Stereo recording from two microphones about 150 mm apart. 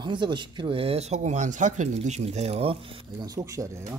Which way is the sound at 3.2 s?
20° right (ahead or behind).